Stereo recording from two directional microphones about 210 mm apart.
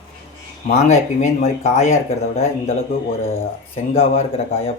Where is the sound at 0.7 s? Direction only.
35° left (ahead or behind).